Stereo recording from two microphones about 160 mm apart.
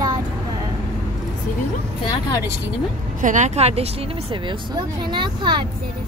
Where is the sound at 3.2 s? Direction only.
50° right (ahead or behind).